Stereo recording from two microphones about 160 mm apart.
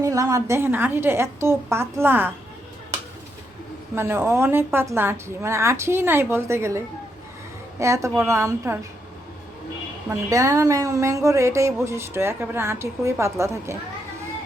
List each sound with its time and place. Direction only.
0.0 s speech: 20° right (ahead or behind)
3.9 s a woman's voice: 15° right (ahead or behind)
10.1 s speech: 20° right (ahead or behind)